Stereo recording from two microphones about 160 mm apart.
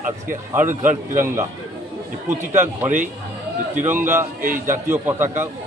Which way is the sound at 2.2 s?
15° right (ahead or behind).